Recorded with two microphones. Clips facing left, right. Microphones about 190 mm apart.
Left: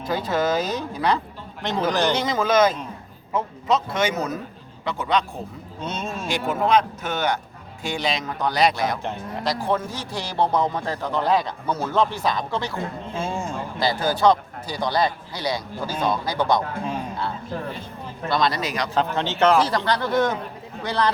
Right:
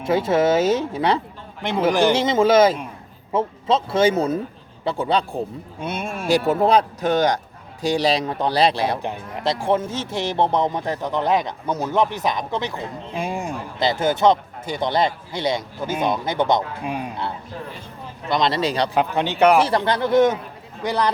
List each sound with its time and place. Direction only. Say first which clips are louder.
0.0 s a man's voice: right 5 dB; 25° right (ahead or behind)
1.9 s speech: right 5 dB; 10° right (ahead or behind)
2.1 s a man's voice: right 4 dB; 25° right (ahead or behind)
5.8 s speech: right 2 dB; 10° right (ahead or behind)
6.2 s speech: right 6 dB; 35° right (ahead or behind)
9.0 s a man's voice: right 1 dB; 15° right (ahead or behind); by 18.9 s 30° right (ahead or behind)
18.9 s a man's voice: even; 15° right (ahead or behind)